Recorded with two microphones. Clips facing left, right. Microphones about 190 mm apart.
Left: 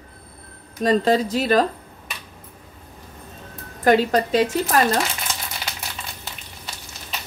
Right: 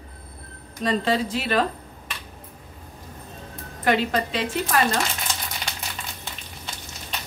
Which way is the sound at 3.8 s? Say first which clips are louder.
Left 5 dB; 40° left (ahead or behind).